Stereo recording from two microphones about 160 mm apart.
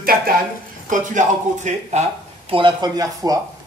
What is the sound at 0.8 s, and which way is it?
Speech, 50° right (ahead or behind).